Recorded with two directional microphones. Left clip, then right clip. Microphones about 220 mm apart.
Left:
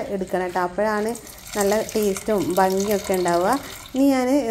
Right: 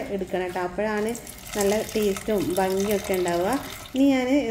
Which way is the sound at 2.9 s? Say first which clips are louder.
Left 3 dB; 15° left (ahead or behind).